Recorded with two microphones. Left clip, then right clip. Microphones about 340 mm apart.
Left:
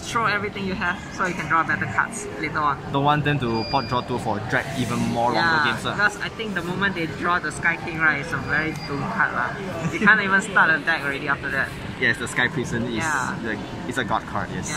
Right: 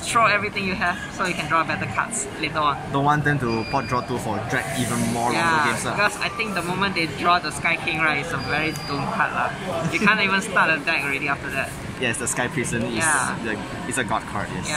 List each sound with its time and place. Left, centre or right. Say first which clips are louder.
0.1 s speech: right 4 dB; centre
5.3 s speech: right 1 dB; centre